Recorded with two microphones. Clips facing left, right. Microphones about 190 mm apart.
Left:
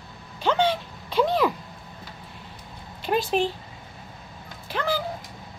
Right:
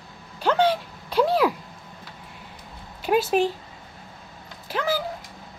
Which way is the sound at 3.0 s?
5° right (ahead or behind).